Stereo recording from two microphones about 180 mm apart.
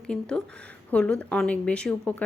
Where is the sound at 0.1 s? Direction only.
5° left (ahead or behind).